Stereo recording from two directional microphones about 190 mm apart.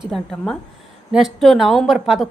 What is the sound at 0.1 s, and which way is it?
A woman's voice, 5° left (ahead or behind).